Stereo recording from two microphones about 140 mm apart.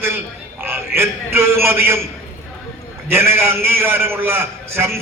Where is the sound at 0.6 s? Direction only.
15° right (ahead or behind).